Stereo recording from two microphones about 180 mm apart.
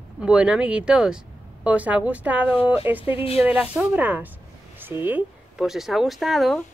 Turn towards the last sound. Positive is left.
turn(degrees=0)  # may be behind; listen again after turning